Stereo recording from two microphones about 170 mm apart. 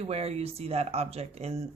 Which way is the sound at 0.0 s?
35° right (ahead or behind).